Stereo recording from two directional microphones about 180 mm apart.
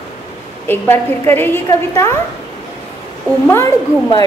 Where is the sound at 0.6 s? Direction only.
10° left (ahead or behind).